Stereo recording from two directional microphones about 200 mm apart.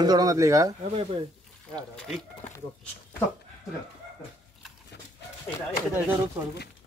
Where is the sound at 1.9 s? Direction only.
5° left (ahead or behind).